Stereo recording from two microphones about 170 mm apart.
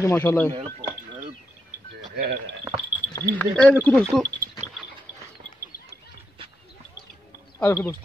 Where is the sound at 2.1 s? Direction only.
65° right (ahead or behind).